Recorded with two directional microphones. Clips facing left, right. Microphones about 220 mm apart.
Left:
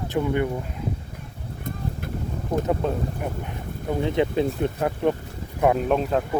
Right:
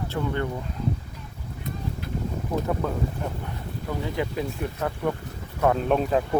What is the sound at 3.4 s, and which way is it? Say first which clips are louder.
Speech: left 3 dB; 20° left (ahead or behind).